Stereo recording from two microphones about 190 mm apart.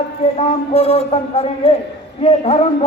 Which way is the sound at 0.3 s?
30° left (ahead or behind).